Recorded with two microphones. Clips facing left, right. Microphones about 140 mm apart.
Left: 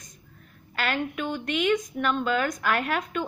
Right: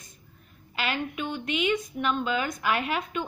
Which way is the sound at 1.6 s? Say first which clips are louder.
Left 3 dB; 5° right (ahead or behind).